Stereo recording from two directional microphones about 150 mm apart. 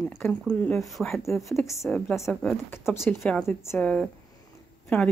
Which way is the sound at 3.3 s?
5° left (ahead or behind).